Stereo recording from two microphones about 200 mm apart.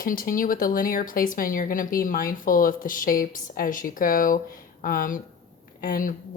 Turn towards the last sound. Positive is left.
turn(degrees=45)  # may be behind; listen again after turning